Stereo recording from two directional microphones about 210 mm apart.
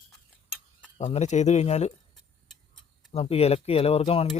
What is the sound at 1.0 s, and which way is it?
Speech, 35° left (ahead or behind).